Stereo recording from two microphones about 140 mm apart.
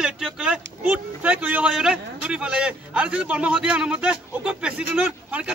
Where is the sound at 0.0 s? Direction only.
5° right (ahead or behind).